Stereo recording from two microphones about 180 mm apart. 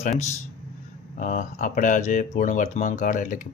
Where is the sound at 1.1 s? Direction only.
45° left (ahead or behind).